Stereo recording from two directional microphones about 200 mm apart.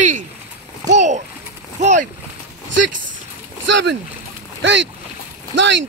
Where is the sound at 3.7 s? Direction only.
65° right (ahead or behind).